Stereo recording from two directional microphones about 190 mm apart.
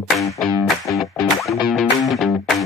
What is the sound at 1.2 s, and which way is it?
Music, centre (ahead or behind).